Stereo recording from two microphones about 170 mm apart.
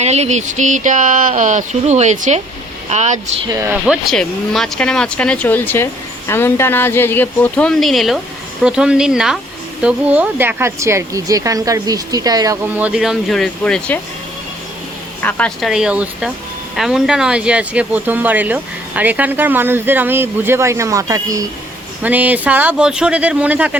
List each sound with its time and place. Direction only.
0.0 s a sound: 40° right (ahead or behind)
2.9 s speech: 40° right (ahead or behind)
3.4 s speech: 20° right (ahead or behind)
3.8 s speech: centre (ahead or behind); by 12.5 s 20° right (ahead or behind)
12.6 s speech: 10° right (ahead or behind)
15.2 s speech: 10° left (ahead or behind); by 21.4 s 20° right (ahead or behind)
22.0 s speech: 10° right (ahead or behind)